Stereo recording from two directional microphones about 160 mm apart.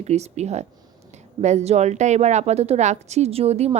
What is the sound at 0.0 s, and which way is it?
A woman's voice, 45° right (ahead or behind).